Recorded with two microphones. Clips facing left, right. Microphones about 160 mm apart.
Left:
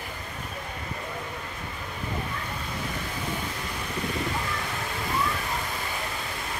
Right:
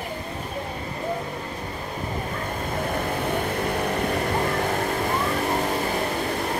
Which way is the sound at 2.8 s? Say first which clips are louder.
Right 10 dB; 55° right (ahead or behind).